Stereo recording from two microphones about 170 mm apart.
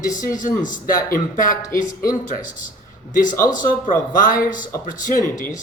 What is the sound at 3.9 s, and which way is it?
Speech, 55° left (ahead or behind).